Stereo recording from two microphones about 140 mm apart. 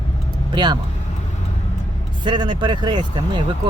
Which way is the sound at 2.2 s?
35° right (ahead or behind).